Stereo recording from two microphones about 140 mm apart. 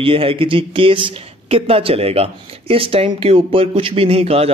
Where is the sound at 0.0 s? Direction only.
40° right (ahead or behind).